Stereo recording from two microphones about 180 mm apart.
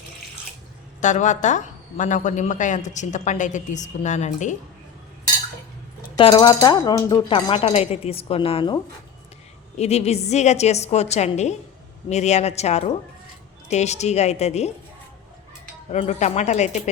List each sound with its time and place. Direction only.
1.0 s a woman's voice: 40° left (ahead or behind)
6.1 s speech: 25° left (ahead or behind)
7.6 s a woman's voice: 35° left (ahead or behind)
15.9 s a woman's voice: 40° left (ahead or behind)